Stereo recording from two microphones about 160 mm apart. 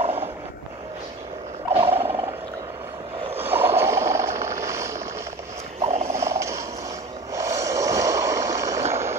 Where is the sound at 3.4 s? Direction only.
15° right (ahead or behind).